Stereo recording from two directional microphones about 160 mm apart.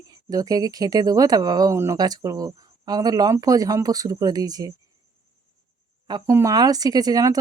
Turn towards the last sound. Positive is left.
turn(degrees=-20)  # may be behind; listen again after turning